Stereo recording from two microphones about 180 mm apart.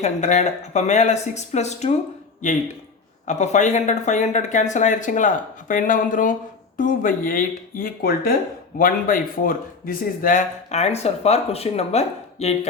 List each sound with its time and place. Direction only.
0.0 s speech: 40° left (ahead or behind)
3.2 s speech: 40° left (ahead or behind)